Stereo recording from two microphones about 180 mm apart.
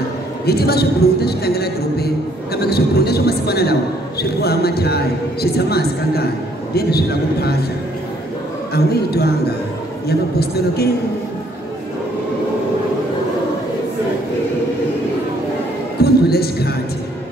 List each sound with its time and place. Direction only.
0.5 s a man's voice: 60° left (ahead or behind)
8.7 s a man's voice: 60° left (ahead or behind)
16.0 s a sound: 60° left (ahead or behind)